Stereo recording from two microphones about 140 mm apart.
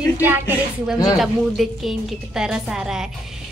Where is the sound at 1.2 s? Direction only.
Centre (ahead or behind).